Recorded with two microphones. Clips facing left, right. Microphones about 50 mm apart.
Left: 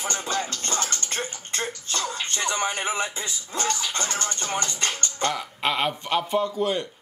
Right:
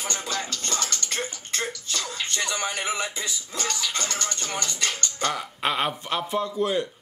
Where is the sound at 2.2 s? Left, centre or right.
Left.